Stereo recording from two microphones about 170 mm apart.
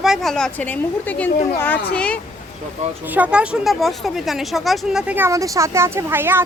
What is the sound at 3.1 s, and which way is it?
A woman's voice, 5° right (ahead or behind).